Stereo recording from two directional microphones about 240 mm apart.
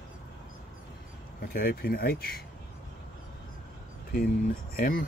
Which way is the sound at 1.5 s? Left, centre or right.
Left.